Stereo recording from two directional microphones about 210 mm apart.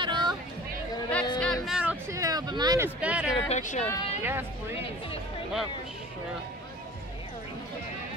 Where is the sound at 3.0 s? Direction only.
5° right (ahead or behind).